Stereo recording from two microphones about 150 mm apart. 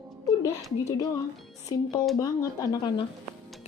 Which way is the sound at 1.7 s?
25° left (ahead or behind).